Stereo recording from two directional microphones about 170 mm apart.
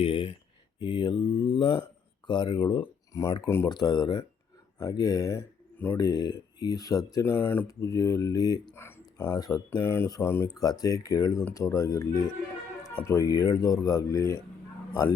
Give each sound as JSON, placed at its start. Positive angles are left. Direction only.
{"t": 0.0, "sound": "a sound", "side_deg": 30}
{"t": 0.8, "sound": "speech", "side_deg": 30}
{"t": 13.1, "sound": "speech", "side_deg": 20}